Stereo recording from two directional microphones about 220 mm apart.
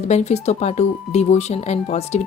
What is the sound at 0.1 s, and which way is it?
Speech, 30° left (ahead or behind).